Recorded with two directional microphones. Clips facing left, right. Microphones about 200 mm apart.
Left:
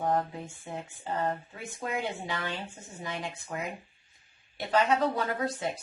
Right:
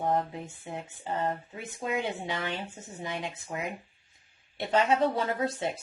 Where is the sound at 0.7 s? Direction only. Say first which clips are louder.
Right 1 dB; 25° right (ahead or behind).